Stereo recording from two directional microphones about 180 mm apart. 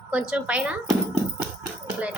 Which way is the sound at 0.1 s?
5° right (ahead or behind).